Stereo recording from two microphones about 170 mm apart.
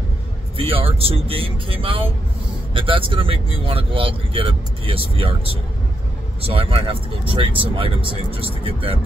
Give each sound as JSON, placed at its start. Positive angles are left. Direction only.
{"t": 0.6, "sound": "speech", "side_deg": -35}